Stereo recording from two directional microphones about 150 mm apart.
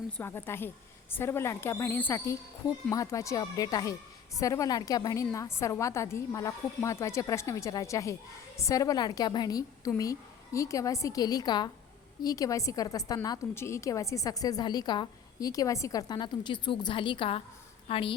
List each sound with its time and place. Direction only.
0.2 s a woman's voice: 15° left (ahead or behind); by 18.1 s 40° left (ahead or behind)